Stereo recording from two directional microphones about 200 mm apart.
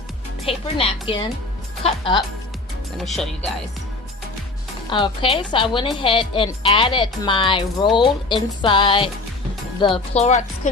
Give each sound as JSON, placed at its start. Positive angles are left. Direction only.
{"t": 0.4, "sound": "speech", "side_deg": 25}
{"t": 3.0, "sound": "speech", "side_deg": 0}
{"t": 4.9, "sound": "speech", "side_deg": 25}